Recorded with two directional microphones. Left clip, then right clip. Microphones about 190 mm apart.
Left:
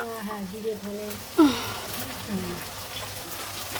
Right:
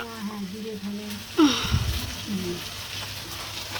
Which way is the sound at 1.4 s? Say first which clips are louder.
Even; 15° left (ahead or behind).